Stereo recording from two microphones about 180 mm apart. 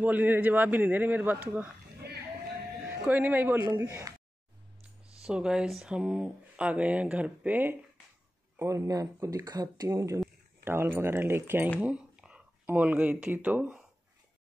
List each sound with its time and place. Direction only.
0.0 s a man's voice: 10° right (ahead or behind)
3.1 s a man's voice: 10° right (ahead or behind)
5.2 s a man's voice: 5° right (ahead or behind)